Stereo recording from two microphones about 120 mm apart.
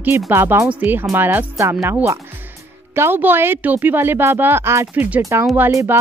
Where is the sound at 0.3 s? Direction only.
20° right (ahead or behind).